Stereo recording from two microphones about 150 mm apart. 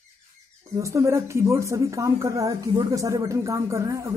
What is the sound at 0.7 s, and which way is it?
Speech, 20° right (ahead or behind).